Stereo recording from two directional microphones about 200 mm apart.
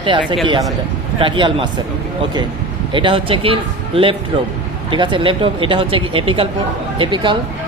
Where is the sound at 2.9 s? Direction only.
25° right (ahead or behind).